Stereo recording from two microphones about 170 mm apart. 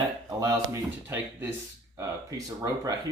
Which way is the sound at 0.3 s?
20° right (ahead or behind).